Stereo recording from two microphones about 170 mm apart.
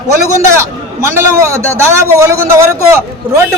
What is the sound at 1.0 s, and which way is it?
A man's voice, 15° right (ahead or behind).